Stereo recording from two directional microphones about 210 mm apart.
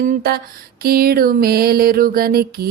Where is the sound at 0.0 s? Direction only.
45° right (ahead or behind).